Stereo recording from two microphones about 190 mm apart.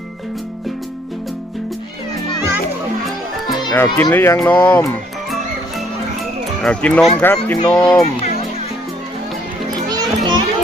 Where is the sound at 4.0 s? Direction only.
15° left (ahead or behind).